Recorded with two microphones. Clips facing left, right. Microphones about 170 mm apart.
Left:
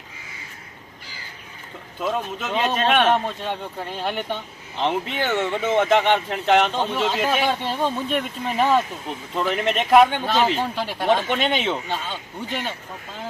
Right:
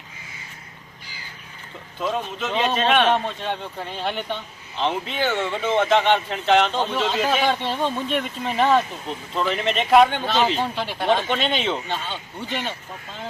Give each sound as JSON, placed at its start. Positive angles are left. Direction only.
{"t": 2.0, "sound": "speech", "side_deg": 5}